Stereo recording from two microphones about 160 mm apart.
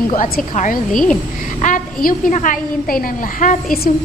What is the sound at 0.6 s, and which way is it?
A woman's voice, 55° left (ahead or behind).